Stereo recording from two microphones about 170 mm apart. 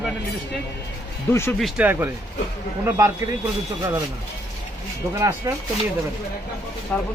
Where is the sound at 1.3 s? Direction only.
15° left (ahead or behind).